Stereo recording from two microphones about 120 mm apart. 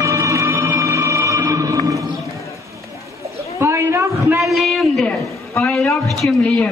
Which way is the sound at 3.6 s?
25° right (ahead or behind).